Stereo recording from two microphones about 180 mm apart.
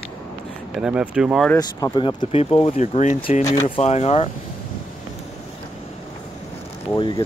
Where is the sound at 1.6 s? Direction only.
25° left (ahead or behind).